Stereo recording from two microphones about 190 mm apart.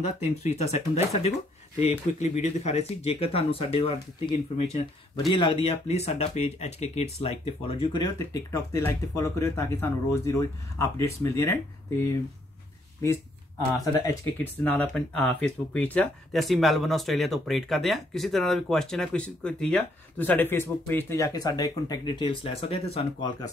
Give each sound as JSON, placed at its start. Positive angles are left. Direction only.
{"t": 0.2, "sound": "speech", "side_deg": 35}
{"t": 14.0, "sound": "speech", "side_deg": 10}